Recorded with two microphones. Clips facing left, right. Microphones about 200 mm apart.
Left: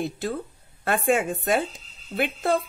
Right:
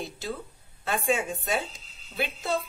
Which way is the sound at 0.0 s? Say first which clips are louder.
Left 6 dB; 55° left (ahead or behind).